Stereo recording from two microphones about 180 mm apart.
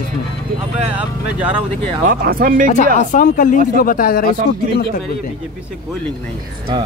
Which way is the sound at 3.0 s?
50° left (ahead or behind).